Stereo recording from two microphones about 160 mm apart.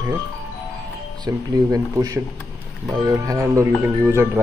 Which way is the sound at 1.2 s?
20° right (ahead or behind).